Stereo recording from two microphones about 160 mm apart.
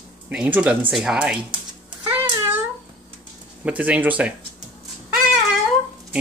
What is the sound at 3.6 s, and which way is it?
Speech, 10° right (ahead or behind).